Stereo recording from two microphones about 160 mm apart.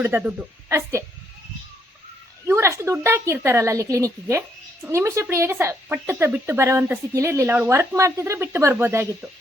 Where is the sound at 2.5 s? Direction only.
15° right (ahead or behind).